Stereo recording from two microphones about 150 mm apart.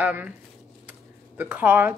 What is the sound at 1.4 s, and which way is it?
Speech, 15° right (ahead or behind).